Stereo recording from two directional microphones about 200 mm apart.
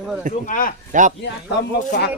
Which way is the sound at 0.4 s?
40° left (ahead or behind).